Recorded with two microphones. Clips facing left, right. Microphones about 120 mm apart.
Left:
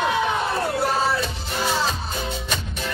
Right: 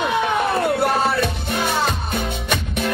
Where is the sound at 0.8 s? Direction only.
60° right (ahead or behind).